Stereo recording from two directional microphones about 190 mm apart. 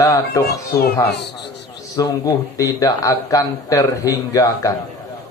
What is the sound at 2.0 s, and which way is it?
Speech, 20° left (ahead or behind).